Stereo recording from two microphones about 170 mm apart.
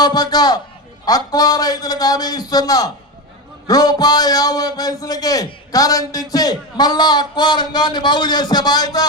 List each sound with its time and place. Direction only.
0.0 s a man's voice: 25° left (ahead or behind)